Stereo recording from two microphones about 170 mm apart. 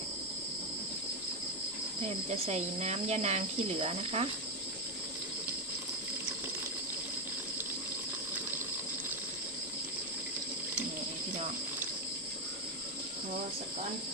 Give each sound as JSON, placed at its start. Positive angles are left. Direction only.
{"t": 2.0, "sound": "speech", "side_deg": -40}